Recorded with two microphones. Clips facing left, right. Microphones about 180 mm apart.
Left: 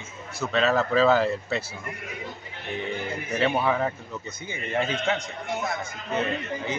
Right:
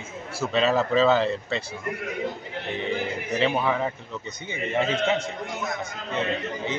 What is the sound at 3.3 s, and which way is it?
Speech, 5° left (ahead or behind).